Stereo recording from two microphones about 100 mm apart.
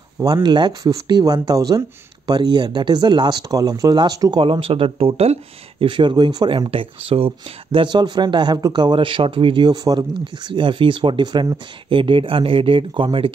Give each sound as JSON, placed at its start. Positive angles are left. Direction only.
{"t": 0.2, "sound": "speech", "side_deg": -45}
{"t": 4.4, "sound": "speech", "side_deg": -65}
{"t": 5.9, "sound": "speech", "side_deg": -50}
{"t": 7.1, "sound": "speech", "side_deg": -60}